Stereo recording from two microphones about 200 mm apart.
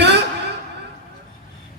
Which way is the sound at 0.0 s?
55° right (ahead or behind).